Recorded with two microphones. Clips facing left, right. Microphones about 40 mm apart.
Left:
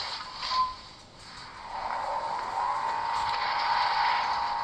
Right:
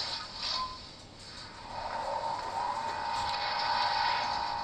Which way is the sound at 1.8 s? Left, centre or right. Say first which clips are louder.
Left 3 dB; left.